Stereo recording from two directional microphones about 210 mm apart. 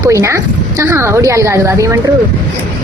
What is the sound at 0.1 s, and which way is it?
Speech, 15° right (ahead or behind).